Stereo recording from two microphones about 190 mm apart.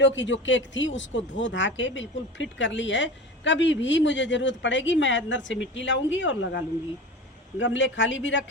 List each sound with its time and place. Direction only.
0.0 s speech: 75° left (ahead or behind)